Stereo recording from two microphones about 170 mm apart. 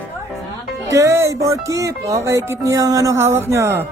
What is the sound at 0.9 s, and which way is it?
Music, 15° right (ahead or behind).